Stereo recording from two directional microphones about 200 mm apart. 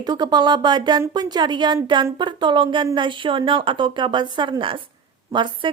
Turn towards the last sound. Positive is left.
turn(degrees=-25)  # may be behind; listen again after turning